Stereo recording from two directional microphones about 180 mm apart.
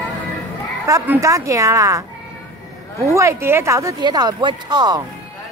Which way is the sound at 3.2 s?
15° right (ahead or behind).